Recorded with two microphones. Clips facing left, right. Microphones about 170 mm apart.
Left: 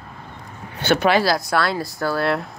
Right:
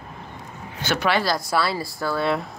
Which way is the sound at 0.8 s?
60° left (ahead or behind).